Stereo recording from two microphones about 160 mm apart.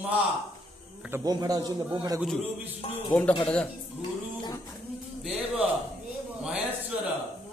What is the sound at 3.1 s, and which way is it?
Speech, 10° left (ahead or behind).